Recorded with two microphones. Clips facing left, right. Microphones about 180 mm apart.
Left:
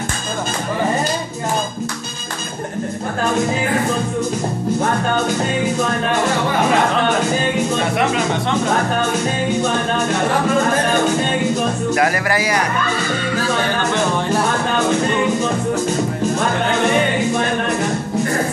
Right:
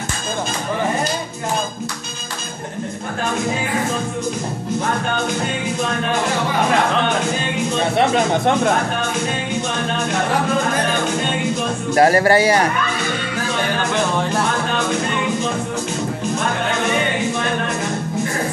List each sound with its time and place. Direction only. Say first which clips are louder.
11.9 s speech: right 8 dB; 30° right (ahead or behind)